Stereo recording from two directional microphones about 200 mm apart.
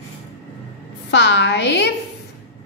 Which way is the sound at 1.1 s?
60° left (ahead or behind).